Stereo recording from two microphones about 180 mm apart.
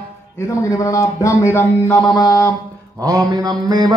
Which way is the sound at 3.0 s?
20° right (ahead or behind).